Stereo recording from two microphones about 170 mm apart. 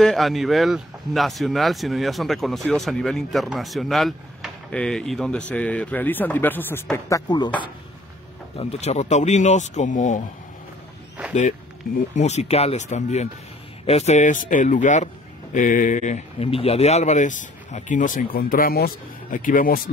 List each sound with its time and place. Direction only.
0.0 s speech: centre (ahead or behind); by 7.5 s 25° left (ahead or behind)
8.5 s speech: 40° left (ahead or behind)
12.2 s speech: 40° left (ahead or behind); by 19.9 s 55° left (ahead or behind)